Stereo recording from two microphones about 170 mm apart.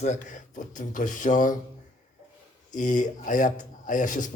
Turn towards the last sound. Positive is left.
turn(degrees=50)  # may be behind; listen again after turning